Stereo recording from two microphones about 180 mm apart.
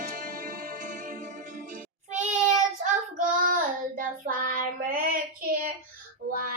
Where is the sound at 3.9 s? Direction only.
50° right (ahead or behind).